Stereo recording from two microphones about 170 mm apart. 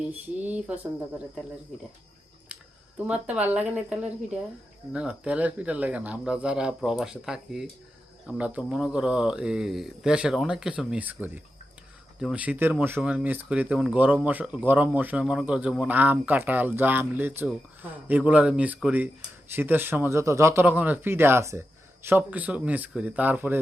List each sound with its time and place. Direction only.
0.0 s speech: 10° right (ahead or behind)
3.1 s speech: 10° right (ahead or behind)